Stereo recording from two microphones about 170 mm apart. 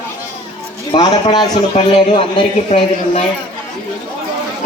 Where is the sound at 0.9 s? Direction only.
25° left (ahead or behind).